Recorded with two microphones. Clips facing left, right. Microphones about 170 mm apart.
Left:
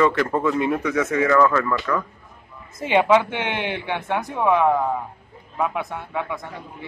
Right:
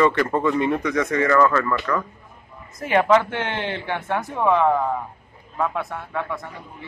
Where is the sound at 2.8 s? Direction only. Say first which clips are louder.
Even; 15° left (ahead or behind).